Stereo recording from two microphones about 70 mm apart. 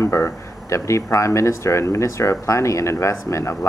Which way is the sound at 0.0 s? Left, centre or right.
Left.